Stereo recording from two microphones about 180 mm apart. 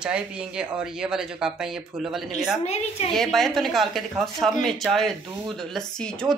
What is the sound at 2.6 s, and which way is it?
Speech, 35° left (ahead or behind).